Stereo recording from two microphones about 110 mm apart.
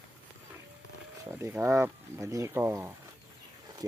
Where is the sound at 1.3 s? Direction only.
20° right (ahead or behind).